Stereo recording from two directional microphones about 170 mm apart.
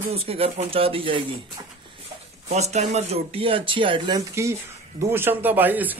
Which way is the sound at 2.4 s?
40° right (ahead or behind).